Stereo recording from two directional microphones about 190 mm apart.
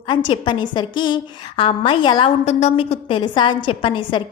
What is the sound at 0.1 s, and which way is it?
A woman's voice, 25° left (ahead or behind).